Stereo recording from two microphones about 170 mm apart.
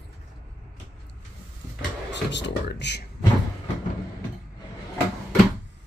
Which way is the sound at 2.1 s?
90° left.